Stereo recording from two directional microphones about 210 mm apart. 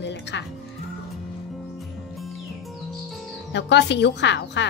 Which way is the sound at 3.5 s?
55° left (ahead or behind).